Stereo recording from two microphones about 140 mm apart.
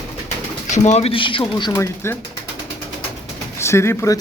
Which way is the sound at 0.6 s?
55° left (ahead or behind).